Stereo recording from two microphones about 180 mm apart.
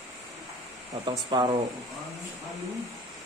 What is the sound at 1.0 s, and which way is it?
Speech, 25° right (ahead or behind).